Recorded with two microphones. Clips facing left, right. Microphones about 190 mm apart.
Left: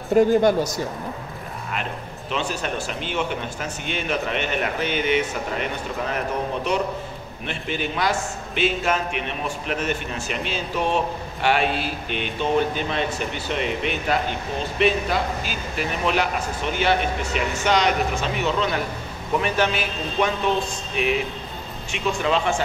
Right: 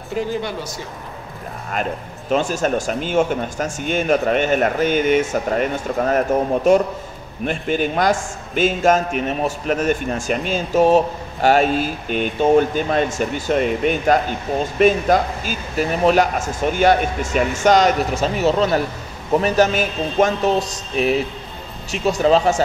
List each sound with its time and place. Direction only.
0.1 s speech: 50° left (ahead or behind)
1.7 s a man's voice: 45° right (ahead or behind)